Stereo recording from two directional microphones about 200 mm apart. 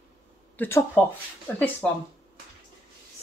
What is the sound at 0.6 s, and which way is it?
Speech, 10° left (ahead or behind).